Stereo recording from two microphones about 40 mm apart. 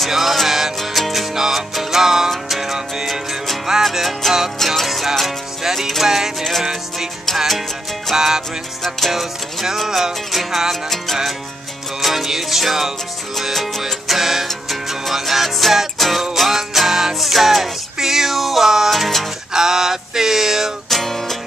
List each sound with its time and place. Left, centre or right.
0.1 s music: centre
0.7 s music: centre
1.3 s music: centre
4.2 s music: centre
9.8 s music: centre
12.0 s music: centre
19.5 s a sound: centre
20.9 s music: centre